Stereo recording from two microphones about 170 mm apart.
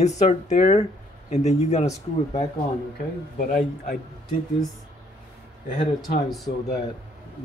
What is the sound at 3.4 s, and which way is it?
Speech, 60° left (ahead or behind).